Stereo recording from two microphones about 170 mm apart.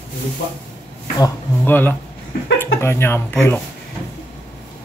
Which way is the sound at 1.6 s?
10° left (ahead or behind).